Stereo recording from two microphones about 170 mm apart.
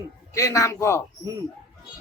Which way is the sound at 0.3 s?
20° left (ahead or behind).